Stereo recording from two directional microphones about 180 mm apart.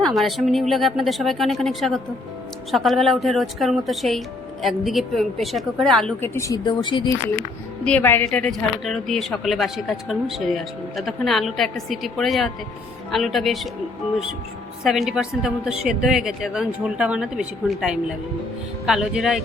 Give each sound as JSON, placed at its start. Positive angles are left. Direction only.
{"t": 0.0, "sound": "speech", "side_deg": 0}
{"t": 7.9, "sound": "speech", "side_deg": 10}
{"t": 14.8, "sound": "speech", "side_deg": 0}